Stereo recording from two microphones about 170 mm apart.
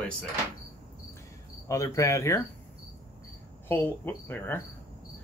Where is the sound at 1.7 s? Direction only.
20° left (ahead or behind).